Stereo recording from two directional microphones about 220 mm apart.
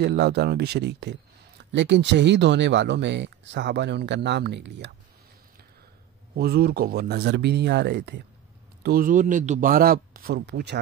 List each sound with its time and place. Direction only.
0.0 s speech: 50° right (ahead or behind)
6.3 s a man's voice: 45° right (ahead or behind)